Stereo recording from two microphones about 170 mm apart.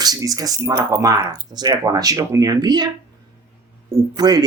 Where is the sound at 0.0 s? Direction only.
20° right (ahead or behind).